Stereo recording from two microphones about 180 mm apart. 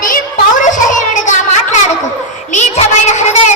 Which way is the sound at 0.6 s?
45° left (ahead or behind).